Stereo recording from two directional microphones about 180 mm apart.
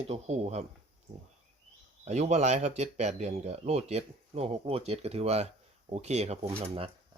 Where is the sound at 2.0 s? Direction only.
40° right (ahead or behind).